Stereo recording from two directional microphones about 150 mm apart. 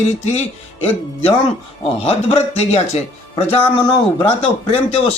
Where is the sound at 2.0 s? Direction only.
40° left (ahead or behind).